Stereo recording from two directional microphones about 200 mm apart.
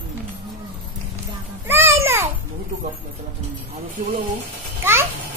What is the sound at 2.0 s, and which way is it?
Babbling, 10° right (ahead or behind).